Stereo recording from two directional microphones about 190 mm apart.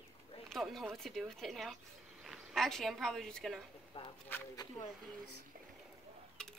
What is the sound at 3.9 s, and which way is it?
Speech, 30° left (ahead or behind).